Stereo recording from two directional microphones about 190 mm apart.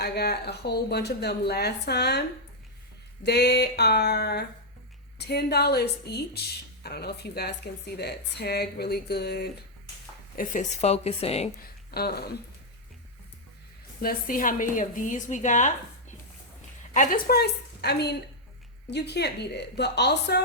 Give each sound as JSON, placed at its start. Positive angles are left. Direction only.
{"t": 0.0, "sound": "a woman's voice", "side_deg": 60}
{"t": 3.2, "sound": "a woman's voice", "side_deg": 60}
{"t": 10.3, "sound": "speech", "side_deg": 40}
{"t": 11.6, "sound": "speech", "side_deg": 55}
{"t": 14.0, "sound": "a woman's voice", "side_deg": 50}
{"t": 16.9, "sound": "a woman's voice", "side_deg": 45}